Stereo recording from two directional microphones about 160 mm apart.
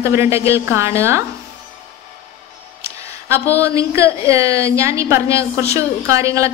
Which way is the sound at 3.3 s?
20° right (ahead or behind).